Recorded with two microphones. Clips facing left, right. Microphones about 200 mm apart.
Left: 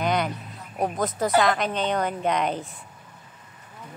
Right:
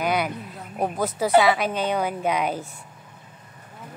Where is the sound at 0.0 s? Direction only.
5° right (ahead or behind).